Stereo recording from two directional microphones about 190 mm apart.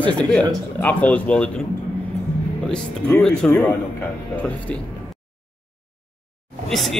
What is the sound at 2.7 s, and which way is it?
Speech, 5° left (ahead or behind).